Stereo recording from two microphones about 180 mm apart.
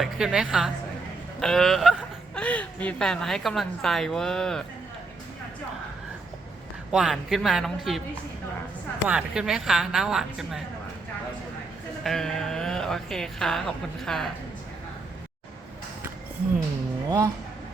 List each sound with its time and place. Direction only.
0.0 s a woman's voice: 5° right (ahead or behind)
6.9 s a woman's voice: 5° right (ahead or behind)
9.0 s a woman's voice: 5° right (ahead or behind)
12.0 s speech: centre (ahead or behind)
17.1 s speech: 20° right (ahead or behind)